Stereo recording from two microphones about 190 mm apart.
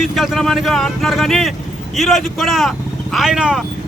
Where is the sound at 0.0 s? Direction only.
Centre (ahead or behind).